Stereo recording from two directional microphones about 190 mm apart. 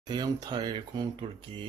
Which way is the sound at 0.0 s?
20° right (ahead or behind).